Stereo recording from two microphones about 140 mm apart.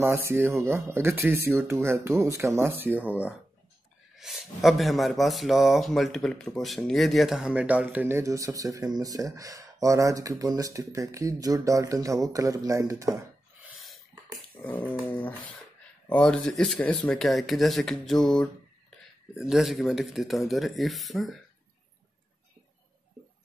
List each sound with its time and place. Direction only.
0.0 s speech: 20° right (ahead or behind)
13.7 s a sound: centre (ahead or behind)
14.6 s dog: 10° left (ahead or behind)
16.1 s speech: 5° left (ahead or behind)